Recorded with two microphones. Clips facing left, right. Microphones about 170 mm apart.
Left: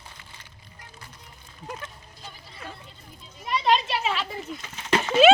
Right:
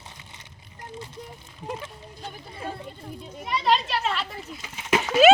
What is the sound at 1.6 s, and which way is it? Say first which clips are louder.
Speech: right 4 dB; 25° right (ahead or behind).